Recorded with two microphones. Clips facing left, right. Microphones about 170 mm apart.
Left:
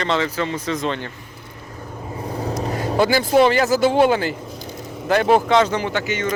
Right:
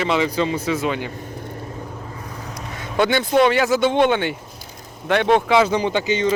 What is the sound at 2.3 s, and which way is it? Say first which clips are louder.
Vehicle: left 9 dB; 35° left (ahead or behind).